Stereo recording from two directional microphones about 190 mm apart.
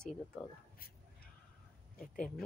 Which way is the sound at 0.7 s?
50° left (ahead or behind).